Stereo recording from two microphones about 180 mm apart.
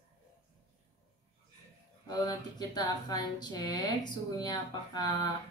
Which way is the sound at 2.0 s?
20° left (ahead or behind).